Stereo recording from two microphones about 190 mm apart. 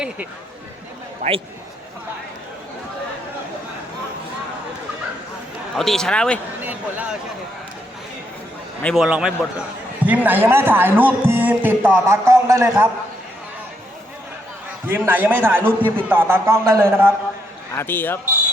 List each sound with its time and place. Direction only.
1.2 s a man's voice: 35° right (ahead or behind)
5.7 s speech: centre (ahead or behind)
6.6 s a sound: 10° right (ahead or behind)
8.8 s speech: 5° left (ahead or behind); by 12.9 s 15° right (ahead or behind)
14.8 s speech: 10° right (ahead or behind)
17.7 s a man's voice: 10° left (ahead or behind)